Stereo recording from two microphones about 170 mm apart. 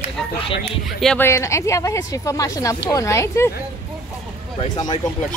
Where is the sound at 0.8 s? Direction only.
5° left (ahead or behind).